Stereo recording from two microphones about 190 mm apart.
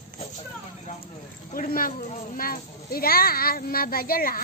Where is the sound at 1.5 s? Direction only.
50° left (ahead or behind).